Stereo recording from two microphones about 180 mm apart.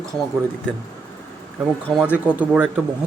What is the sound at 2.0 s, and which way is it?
Speech, 10° right (ahead or behind).